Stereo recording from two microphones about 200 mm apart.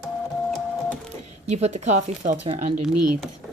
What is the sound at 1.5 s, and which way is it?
Speech, 35° right (ahead or behind).